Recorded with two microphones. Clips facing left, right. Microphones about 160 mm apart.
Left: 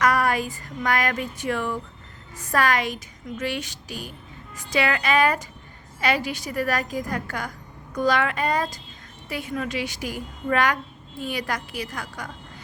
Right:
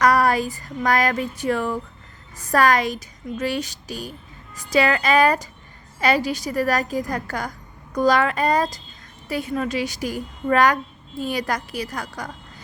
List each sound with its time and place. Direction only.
0.0 s speech: 35° right (ahead or behind)